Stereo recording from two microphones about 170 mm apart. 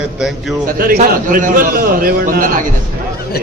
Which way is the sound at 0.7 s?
55° right (ahead or behind).